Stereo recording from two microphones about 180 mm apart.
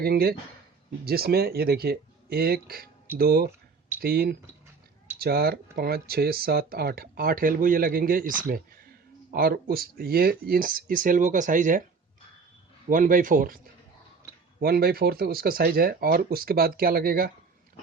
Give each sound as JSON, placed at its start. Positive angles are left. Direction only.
{"t": 0.0, "sound": "speech", "side_deg": -60}
{"t": 12.9, "sound": "speech", "side_deg": -50}
{"t": 14.6, "sound": "speech", "side_deg": -60}